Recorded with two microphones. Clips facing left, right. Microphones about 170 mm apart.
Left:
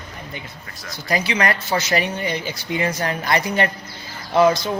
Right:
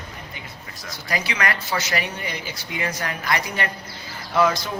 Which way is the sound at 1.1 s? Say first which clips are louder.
Left 5 dB; 30° left (ahead or behind).